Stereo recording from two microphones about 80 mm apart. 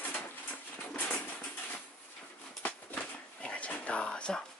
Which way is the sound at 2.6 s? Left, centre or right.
Centre.